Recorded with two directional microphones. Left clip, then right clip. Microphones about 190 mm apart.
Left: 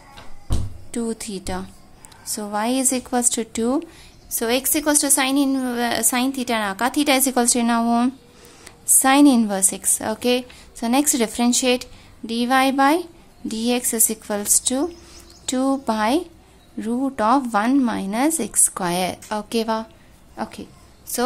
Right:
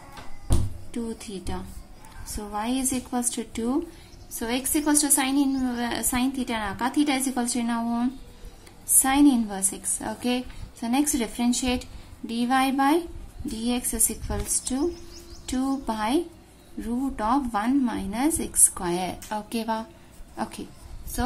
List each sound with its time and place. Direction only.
0.9 s a woman's voice: 40° left (ahead or behind); by 20.6 s 25° left (ahead or behind)